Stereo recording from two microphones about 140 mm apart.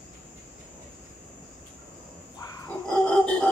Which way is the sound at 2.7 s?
5° left (ahead or behind).